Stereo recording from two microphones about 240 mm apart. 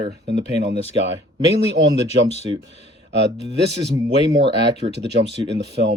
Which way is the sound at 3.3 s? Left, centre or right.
Right.